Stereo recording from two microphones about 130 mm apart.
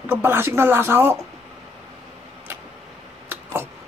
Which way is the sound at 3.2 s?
15° right (ahead or behind).